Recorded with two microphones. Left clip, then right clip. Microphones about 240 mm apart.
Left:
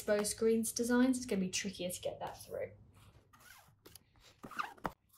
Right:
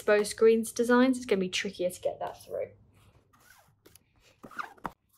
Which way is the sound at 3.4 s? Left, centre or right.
Centre.